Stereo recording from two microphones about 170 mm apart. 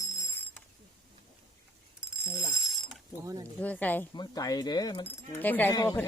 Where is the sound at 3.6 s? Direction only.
10° left (ahead or behind).